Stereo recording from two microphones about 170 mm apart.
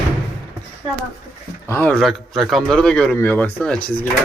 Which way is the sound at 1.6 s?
10° left (ahead or behind).